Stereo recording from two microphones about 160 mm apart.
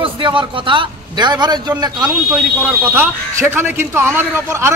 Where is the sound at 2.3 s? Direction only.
10° right (ahead or behind).